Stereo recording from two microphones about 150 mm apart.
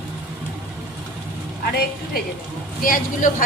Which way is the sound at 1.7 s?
90° left.